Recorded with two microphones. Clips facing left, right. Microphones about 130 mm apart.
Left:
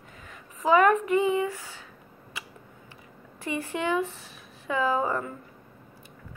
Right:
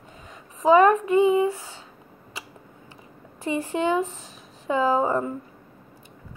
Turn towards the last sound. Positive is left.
turn(degrees=-30)  # may be behind; listen again after turning